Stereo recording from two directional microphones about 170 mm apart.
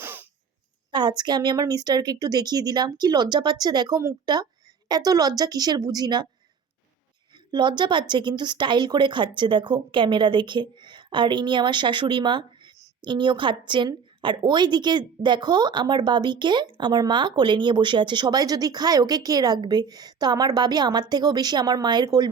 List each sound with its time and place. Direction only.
0.0 s cough: 10° right (ahead or behind)
0.9 s a woman's voice: 25° right (ahead or behind)
7.3 s a woman's voice: 25° right (ahead or behind)